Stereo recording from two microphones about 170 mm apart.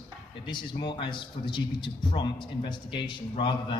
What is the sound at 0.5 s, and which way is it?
A man's voice, 25° left (ahead or behind).